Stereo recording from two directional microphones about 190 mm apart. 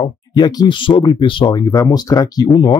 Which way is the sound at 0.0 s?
20° left (ahead or behind).